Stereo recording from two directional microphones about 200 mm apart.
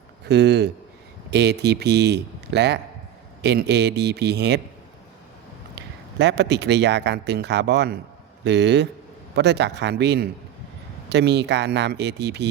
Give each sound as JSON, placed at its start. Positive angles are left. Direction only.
{"t": 0.3, "sound": "a man's voice", "side_deg": -60}
{"t": 5.7, "sound": "a man's voice", "side_deg": -60}